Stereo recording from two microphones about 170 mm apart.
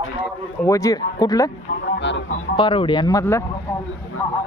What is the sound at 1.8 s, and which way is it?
Speech, 90° left.